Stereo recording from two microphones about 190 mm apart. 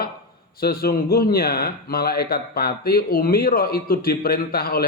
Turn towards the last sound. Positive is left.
turn(degrees=50)  # may be behind; listen again after turning